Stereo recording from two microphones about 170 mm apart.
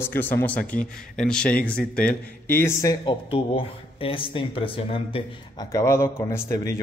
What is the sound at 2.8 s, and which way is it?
Speech, 25° left (ahead or behind).